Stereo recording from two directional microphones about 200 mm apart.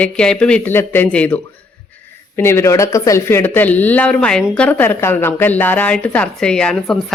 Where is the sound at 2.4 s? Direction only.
10° left (ahead or behind).